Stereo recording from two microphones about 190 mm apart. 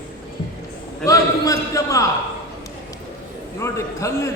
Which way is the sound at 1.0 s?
15° left (ahead or behind).